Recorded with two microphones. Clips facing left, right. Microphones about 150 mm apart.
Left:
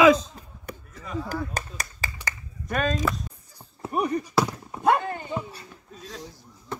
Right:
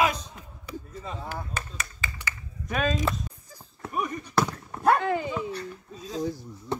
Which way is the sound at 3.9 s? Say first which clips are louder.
Left 4 dB; 45° left (ahead or behind).